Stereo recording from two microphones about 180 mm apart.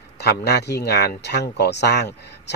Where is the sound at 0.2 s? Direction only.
65° left (ahead or behind).